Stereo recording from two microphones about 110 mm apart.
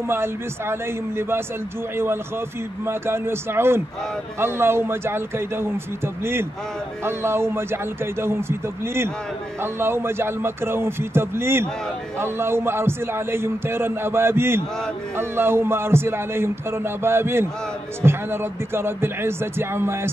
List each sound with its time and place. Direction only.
0.1 s a man's voice: 20° right (ahead or behind)
2.8 s a man's voice: 20° right (ahead or behind)
7.1 s a man's voice: 20° right (ahead or behind)